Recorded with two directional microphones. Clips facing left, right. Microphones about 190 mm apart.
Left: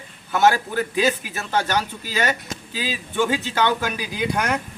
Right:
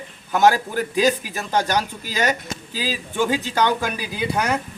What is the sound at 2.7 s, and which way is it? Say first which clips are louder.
Speech: right 1 dB; 40° right (ahead or behind).